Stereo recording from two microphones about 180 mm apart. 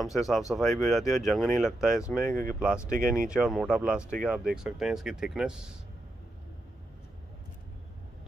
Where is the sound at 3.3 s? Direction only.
Centre (ahead or behind).